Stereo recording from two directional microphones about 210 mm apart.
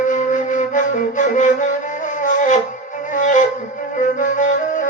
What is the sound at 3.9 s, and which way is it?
Flute, 35° left (ahead or behind).